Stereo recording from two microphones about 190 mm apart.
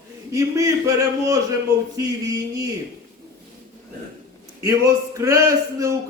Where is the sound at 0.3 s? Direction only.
15° right (ahead or behind).